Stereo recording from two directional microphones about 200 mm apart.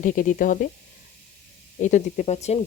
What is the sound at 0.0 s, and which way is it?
Speech, 40° left (ahead or behind).